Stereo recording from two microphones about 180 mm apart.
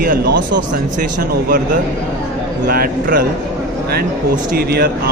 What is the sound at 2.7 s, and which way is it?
Speech, 55° right (ahead or behind).